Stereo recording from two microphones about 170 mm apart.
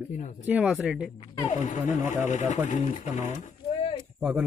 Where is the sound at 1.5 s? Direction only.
45° left (ahead or behind).